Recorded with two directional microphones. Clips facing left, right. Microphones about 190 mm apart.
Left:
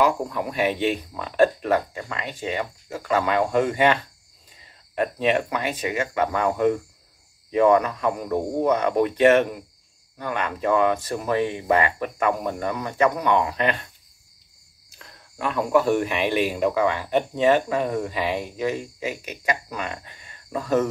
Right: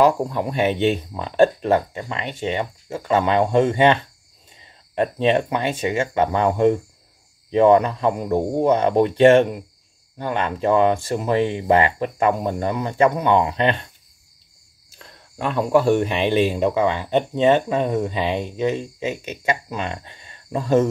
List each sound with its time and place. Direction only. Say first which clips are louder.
0.0 s speech: right 4 dB; 30° right (ahead or behind)
15.0 s speech: right 3 dB; 30° right (ahead or behind)